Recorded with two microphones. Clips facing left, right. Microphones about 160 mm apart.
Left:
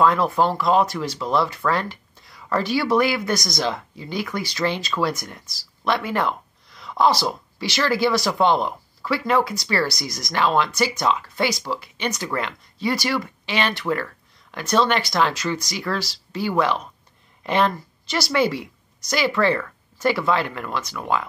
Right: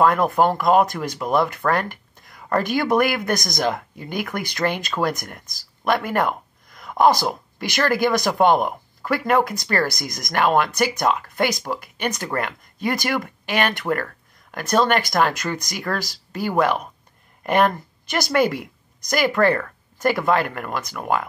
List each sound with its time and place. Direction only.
0.0 s speech: 50° right (ahead or behind)
5.9 s a sound: 50° right (ahead or behind)
7.5 s speech: 50° right (ahead or behind)